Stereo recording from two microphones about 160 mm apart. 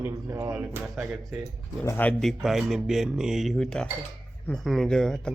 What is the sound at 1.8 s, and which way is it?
Speech, 15° left (ahead or behind).